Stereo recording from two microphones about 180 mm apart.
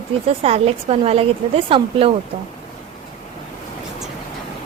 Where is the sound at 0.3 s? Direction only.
35° right (ahead or behind).